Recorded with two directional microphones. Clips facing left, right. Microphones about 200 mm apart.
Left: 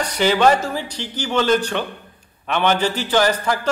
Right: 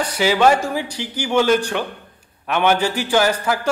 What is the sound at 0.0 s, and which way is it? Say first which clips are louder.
A man's voice: even; 10° right (ahead or behind).